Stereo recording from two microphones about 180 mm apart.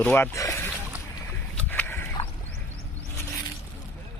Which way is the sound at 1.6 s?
10° left (ahead or behind).